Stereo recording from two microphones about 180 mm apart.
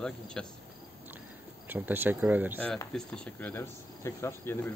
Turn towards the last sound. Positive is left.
turn(degrees=10)  # may be behind; listen again after turning